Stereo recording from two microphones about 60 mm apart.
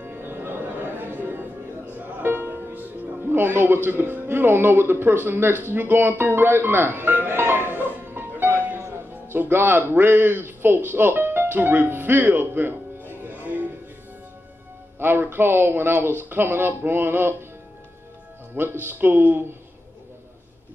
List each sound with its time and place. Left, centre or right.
0.0 s music: right
3.3 s speech: right
7.2 s music: right
8.8 s a man's voice: right
10.9 s music: right
15.0 s speech: right
18.5 s speech: right